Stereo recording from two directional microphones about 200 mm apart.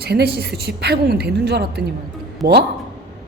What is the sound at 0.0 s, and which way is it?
A woman's voice, 50° right (ahead or behind).